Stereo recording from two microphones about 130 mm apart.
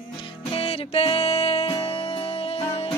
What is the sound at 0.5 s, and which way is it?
Music, 50° left (ahead or behind).